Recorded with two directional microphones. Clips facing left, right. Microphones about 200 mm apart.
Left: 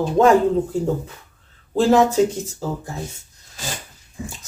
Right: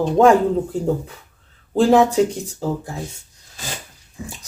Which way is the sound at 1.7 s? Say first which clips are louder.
Right 1 dB; 15° right (ahead or behind).